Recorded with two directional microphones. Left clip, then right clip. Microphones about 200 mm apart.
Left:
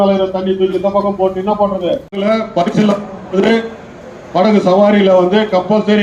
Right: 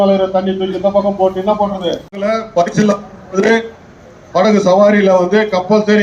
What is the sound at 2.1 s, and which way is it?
A man's voice, 20° right (ahead or behind).